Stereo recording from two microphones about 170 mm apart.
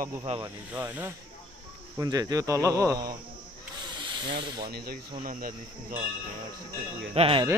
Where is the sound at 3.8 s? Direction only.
25° right (ahead or behind).